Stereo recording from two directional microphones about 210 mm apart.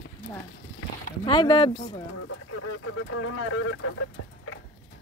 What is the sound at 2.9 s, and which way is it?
Speech, 85° left.